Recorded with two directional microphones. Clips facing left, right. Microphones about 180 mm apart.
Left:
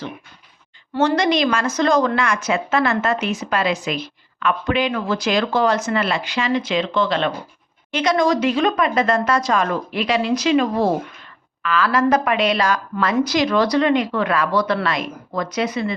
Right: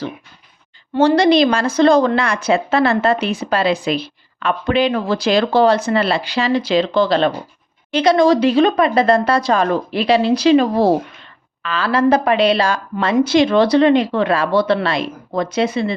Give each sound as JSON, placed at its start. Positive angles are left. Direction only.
{"t": 0.9, "sound": "a woman's voice", "side_deg": -30}